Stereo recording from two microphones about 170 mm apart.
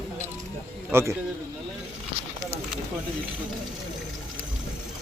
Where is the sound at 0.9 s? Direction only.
15° right (ahead or behind).